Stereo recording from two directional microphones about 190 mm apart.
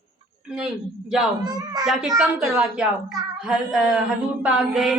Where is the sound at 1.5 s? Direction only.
20° right (ahead or behind).